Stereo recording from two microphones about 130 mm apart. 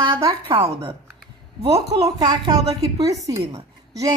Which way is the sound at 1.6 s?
55° right (ahead or behind).